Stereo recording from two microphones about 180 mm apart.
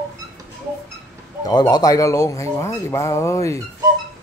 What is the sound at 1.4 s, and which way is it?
Speech, 20° left (ahead or behind).